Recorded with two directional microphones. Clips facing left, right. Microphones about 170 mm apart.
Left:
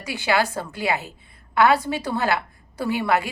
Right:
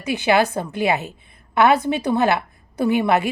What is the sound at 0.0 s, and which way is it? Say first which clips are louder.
A woman's voice: right 5 dB; 20° right (ahead or behind).